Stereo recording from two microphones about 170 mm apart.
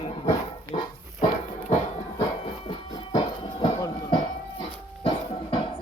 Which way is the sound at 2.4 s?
30° left (ahead or behind).